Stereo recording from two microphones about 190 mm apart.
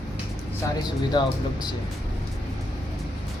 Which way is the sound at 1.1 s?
20° left (ahead or behind).